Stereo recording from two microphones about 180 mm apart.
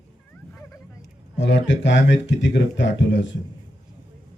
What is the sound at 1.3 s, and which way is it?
A man's voice, 85° left.